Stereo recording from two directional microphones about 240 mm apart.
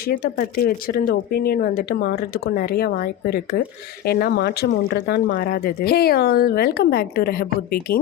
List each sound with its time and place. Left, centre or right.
0.1 s speech: left